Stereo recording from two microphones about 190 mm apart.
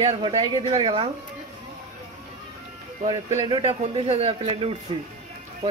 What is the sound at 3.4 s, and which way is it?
A man's voice, 25° right (ahead or behind).